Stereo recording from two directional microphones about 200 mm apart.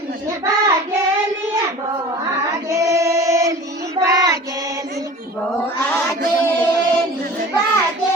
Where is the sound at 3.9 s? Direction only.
15° right (ahead or behind).